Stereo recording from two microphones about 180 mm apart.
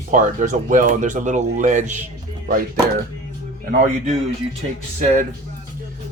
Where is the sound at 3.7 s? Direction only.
45° right (ahead or behind).